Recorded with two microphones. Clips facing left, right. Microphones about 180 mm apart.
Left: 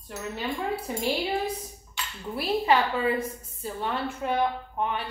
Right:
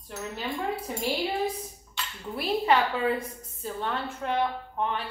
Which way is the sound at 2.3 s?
5° left (ahead or behind).